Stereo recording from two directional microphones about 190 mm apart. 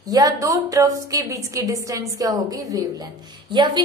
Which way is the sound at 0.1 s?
20° right (ahead or behind).